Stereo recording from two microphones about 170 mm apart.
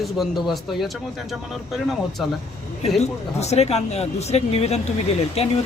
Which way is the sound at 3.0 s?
40° left (ahead or behind).